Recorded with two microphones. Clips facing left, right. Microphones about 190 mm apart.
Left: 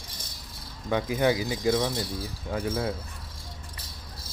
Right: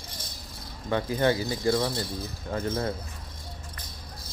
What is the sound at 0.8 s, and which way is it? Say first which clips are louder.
Speech: even; 10° left (ahead or behind).